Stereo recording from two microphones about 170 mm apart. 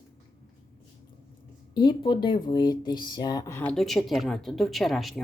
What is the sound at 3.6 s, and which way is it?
Speech, 5° left (ahead or behind).